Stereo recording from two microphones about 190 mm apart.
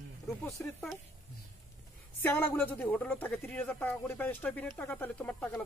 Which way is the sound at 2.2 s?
10° left (ahead or behind).